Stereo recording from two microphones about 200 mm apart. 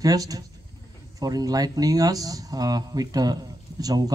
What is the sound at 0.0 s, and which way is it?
A man's voice, 20° right (ahead or behind).